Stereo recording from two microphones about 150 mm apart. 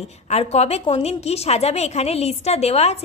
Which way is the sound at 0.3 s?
45° left (ahead or behind).